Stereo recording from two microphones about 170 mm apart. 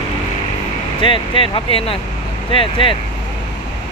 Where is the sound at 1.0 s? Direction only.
30° left (ahead or behind).